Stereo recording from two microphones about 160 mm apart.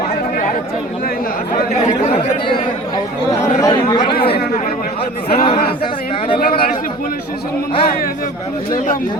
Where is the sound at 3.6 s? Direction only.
25° left (ahead or behind).